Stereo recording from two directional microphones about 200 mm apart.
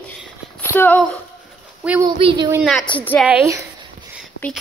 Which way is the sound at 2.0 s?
20° right (ahead or behind).